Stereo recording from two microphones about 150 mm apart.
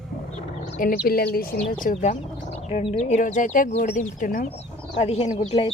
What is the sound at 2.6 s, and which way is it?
Speech, 40° left (ahead or behind).